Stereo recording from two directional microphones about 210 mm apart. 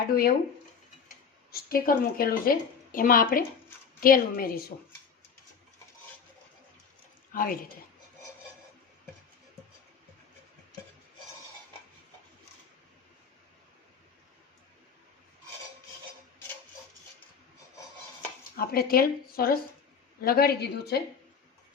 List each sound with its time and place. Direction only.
0.1 s speech: 45° left (ahead or behind)
7.3 s speech: 40° left (ahead or behind)
18.5 s speech: 45° left (ahead or behind)